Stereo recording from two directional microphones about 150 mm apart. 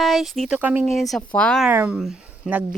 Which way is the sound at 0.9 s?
Centre (ahead or behind).